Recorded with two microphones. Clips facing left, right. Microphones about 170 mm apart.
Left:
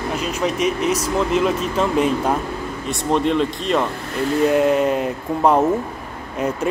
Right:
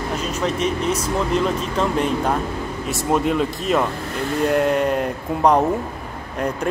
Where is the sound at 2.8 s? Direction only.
5° right (ahead or behind).